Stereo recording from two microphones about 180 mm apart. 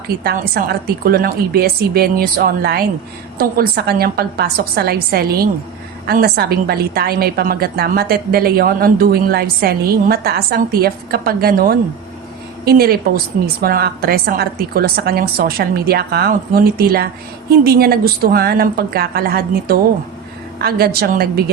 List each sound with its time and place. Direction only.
0.3 s a woman's voice: 60° right (ahead or behind)